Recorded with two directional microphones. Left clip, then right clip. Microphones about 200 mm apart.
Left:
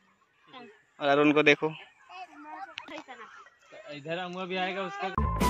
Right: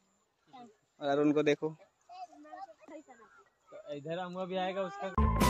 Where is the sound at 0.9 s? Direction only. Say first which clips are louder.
Left 6 dB; 5° right (ahead or behind).